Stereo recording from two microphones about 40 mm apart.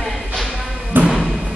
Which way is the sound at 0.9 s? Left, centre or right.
Right.